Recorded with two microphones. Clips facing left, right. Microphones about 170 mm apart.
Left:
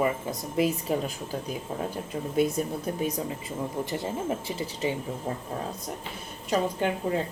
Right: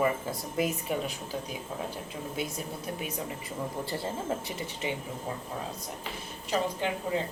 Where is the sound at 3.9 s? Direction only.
20° left (ahead or behind).